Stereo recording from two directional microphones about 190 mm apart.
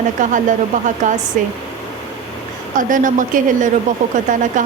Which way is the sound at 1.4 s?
45° right (ahead or behind).